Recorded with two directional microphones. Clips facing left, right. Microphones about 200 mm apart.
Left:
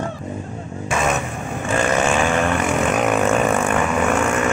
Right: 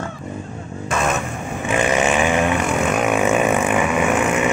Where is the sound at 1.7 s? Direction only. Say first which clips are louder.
Right 1 dB; 15° right (ahead or behind).